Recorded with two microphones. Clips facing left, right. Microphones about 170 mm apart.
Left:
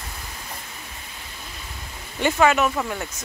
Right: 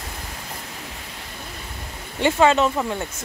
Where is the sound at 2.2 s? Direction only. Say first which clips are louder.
Right 2 dB; 25° right (ahead or behind).